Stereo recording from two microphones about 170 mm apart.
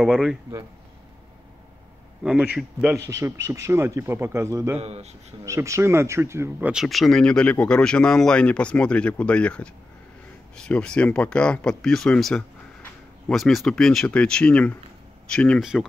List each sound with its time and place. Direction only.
0.0 s speech: centre (ahead or behind)
2.2 s speech: 10° right (ahead or behind)
4.7 s speech: 40° right (ahead or behind)
5.4 s speech: 15° right (ahead or behind)
6.7 s speech: centre (ahead or behind)